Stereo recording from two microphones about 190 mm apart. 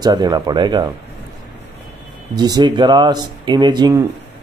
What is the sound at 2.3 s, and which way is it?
A man's voice, 20° right (ahead or behind).